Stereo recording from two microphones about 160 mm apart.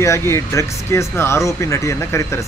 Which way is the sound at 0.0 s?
15° left (ahead or behind).